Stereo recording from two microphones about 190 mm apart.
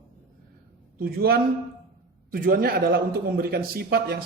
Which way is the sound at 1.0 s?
55° right (ahead or behind).